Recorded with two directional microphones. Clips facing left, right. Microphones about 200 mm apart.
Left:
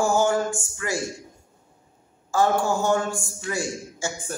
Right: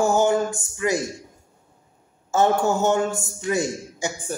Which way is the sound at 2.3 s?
25° right (ahead or behind).